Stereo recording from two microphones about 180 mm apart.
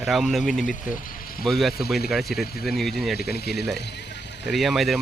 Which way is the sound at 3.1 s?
60° left (ahead or behind).